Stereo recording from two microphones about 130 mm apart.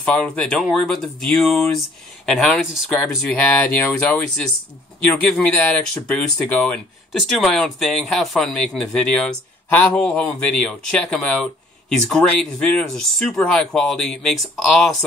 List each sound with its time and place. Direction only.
0.0 s speech: 10° left (ahead or behind)